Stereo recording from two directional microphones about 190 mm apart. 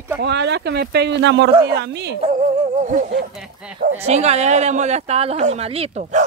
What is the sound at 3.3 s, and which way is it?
Speech, 5° right (ahead or behind).